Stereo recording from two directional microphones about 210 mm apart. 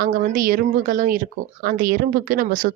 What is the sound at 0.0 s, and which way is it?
Speech, 40° right (ahead or behind).